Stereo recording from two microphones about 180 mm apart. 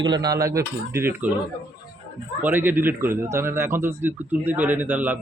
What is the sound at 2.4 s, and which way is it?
Speech, 10° right (ahead or behind).